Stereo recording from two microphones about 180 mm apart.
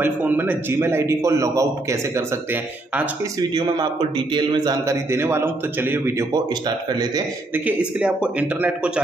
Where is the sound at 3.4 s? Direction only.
25° right (ahead or behind).